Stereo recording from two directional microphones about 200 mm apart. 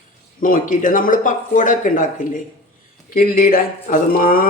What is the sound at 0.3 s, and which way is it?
A man's voice, 40° left (ahead or behind).